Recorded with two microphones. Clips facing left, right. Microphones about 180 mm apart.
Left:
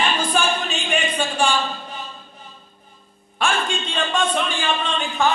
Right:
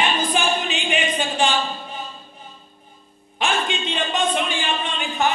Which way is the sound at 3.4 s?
15° right (ahead or behind).